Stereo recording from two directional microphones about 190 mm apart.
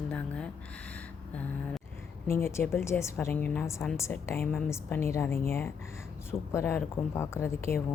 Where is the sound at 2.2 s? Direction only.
15° left (ahead or behind).